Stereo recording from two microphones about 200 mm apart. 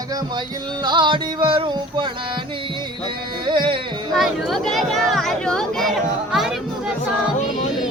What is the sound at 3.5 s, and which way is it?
Music, 25° right (ahead or behind).